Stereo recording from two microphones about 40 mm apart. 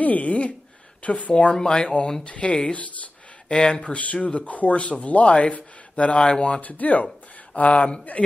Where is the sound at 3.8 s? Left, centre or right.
Left.